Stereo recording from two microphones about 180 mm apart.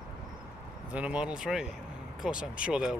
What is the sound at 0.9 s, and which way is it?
Speech, 5° right (ahead or behind).